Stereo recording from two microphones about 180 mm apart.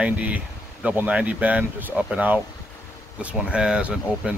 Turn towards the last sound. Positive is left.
turn(degrees=-5)  # may be behind; listen again after turning